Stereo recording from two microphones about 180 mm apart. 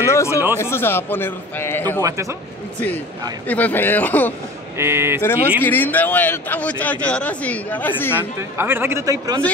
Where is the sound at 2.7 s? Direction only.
10° left (ahead or behind).